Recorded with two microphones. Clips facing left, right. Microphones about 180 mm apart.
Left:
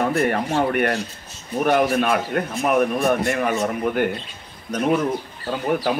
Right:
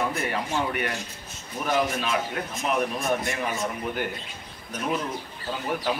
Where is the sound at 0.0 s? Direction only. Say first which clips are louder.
Left 8 dB; 55° left (ahead or behind).